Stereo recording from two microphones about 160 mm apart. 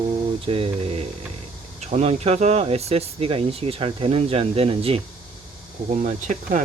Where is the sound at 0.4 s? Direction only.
35° right (ahead or behind).